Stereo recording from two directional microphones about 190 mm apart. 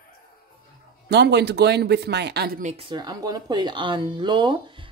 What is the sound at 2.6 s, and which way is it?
Speech, 30° right (ahead or behind).